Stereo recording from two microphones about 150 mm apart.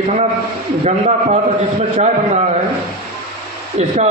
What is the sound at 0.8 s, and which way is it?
Speech, 50° right (ahead or behind).